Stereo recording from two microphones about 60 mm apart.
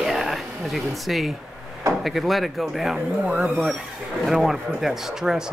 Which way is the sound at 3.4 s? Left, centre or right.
Centre.